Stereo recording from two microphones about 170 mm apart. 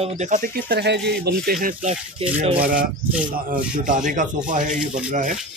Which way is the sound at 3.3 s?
55° right (ahead or behind).